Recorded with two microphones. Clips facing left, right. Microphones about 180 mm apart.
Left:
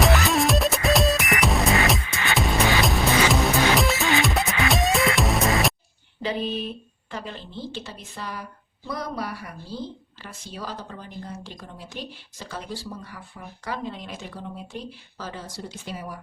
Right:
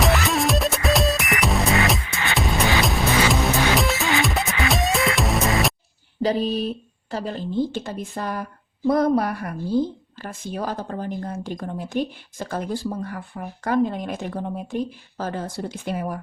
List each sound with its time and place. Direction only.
0.0 s music: centre (ahead or behind)
6.2 s speech: 40° right (ahead or behind)